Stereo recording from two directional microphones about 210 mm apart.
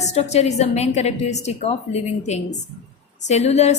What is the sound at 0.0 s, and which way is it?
A woman's voice, 30° left (ahead or behind).